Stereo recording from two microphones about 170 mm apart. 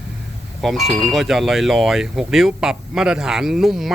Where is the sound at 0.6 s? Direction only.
Centre (ahead or behind).